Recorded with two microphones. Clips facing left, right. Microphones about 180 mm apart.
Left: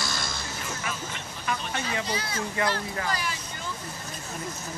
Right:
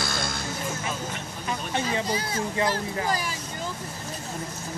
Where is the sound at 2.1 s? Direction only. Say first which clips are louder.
Right 3 dB; 45° right (ahead or behind).